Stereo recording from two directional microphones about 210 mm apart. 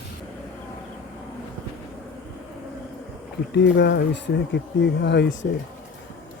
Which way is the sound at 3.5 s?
55° left (ahead or behind).